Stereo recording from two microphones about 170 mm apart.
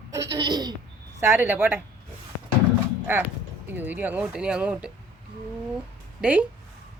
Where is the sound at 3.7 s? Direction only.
10° right (ahead or behind).